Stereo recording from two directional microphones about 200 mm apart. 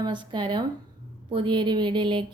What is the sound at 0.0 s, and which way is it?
A woman's voice, 25° right (ahead or behind).